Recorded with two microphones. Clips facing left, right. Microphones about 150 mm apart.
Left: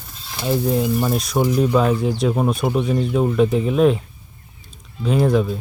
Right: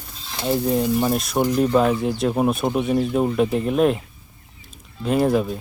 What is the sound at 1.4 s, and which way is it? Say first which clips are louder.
Speech: left 1 dB; 10° left (ahead or behind).